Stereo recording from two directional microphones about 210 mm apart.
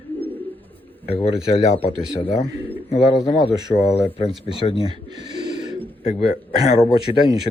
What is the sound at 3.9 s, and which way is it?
Speech, 30° left (ahead or behind).